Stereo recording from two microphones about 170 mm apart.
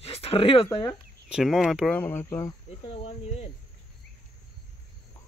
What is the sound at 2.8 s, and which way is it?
Speech, 35° left (ahead or behind).